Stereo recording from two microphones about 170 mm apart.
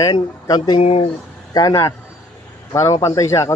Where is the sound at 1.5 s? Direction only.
20° left (ahead or behind).